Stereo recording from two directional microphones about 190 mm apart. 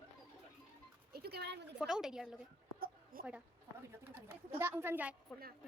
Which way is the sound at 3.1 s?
50° right (ahead or behind).